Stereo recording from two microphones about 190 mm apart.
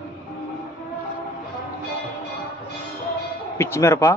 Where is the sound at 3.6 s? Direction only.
15° left (ahead or behind).